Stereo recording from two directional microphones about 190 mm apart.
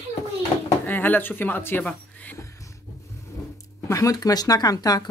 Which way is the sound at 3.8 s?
15° left (ahead or behind).